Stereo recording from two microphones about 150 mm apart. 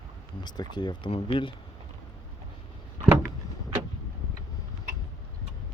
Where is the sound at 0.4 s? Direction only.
30° left (ahead or behind).